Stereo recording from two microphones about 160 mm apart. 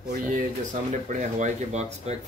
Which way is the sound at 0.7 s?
50° right (ahead or behind).